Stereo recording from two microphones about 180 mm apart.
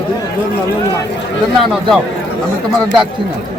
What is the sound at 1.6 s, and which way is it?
Speech, centre (ahead or behind).